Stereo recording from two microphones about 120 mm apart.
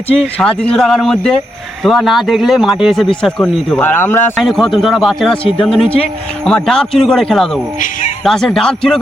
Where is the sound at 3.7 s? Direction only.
15° left (ahead or behind).